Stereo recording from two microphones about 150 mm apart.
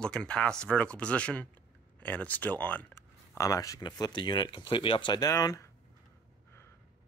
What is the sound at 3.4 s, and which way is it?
Speech, 20° left (ahead or behind).